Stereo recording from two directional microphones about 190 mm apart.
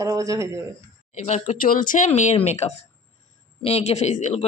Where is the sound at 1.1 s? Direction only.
40° left (ahead or behind).